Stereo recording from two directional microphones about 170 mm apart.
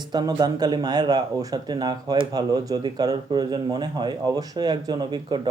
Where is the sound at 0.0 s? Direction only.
25° right (ahead or behind).